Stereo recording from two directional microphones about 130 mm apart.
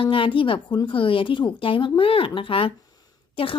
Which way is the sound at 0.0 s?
45° left (ahead or behind).